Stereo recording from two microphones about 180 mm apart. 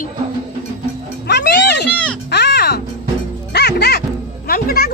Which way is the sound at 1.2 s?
70° left (ahead or behind).